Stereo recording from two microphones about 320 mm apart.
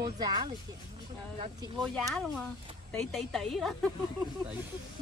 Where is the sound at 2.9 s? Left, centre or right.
Centre.